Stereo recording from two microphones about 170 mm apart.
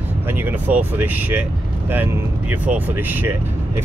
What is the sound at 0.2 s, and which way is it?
Speech, 10° right (ahead or behind).